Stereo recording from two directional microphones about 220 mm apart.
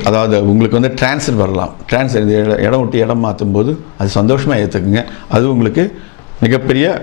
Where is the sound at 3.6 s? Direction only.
10° left (ahead or behind).